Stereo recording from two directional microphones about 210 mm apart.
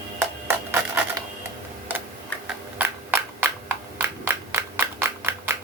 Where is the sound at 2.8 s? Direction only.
10° right (ahead or behind).